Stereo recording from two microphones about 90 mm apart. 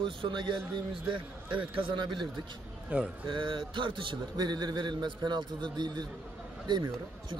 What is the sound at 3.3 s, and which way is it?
A man's voice, 70° right (ahead or behind).